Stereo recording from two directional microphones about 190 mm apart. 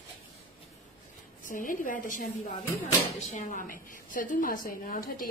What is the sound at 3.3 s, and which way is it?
A woman's voice, 40° left (ahead or behind).